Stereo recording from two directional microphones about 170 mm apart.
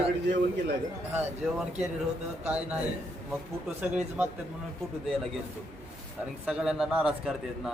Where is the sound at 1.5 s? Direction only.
Centre (ahead or behind).